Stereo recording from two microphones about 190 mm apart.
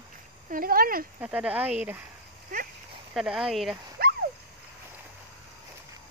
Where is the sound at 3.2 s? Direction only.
5° right (ahead or behind).